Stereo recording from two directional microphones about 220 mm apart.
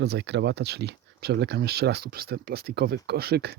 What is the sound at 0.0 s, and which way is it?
Speech, 50° right (ahead or behind).